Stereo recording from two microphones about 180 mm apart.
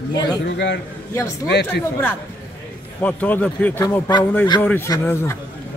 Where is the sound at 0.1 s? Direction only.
20° left (ahead or behind).